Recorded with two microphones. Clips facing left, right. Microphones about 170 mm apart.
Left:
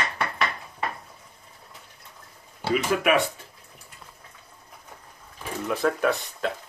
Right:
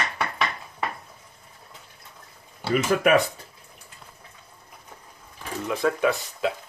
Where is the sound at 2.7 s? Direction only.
40° right (ahead or behind).